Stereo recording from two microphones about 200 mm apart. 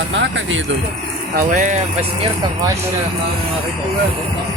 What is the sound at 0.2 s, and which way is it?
Speech, 70° right (ahead or behind).